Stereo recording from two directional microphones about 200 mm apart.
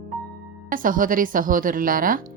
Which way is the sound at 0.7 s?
45° right (ahead or behind).